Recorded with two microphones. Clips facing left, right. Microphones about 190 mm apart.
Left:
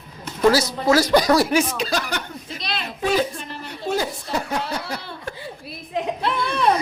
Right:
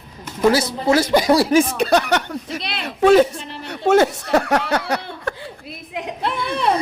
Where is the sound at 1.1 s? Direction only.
25° right (ahead or behind).